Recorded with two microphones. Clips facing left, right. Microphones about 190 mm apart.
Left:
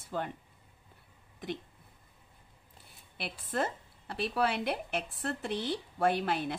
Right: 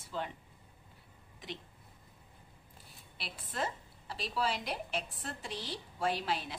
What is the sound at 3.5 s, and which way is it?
Speech, 55° left (ahead or behind).